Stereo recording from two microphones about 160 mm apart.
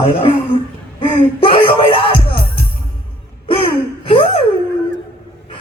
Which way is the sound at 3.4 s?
35° left (ahead or behind).